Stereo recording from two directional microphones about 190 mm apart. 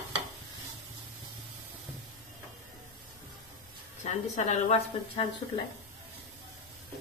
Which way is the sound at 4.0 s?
35° left (ahead or behind).